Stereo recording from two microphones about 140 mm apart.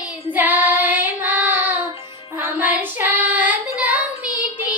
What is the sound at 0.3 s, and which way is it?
Child singing, 15° right (ahead or behind).